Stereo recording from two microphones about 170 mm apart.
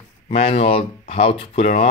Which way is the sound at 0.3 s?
35° left (ahead or behind).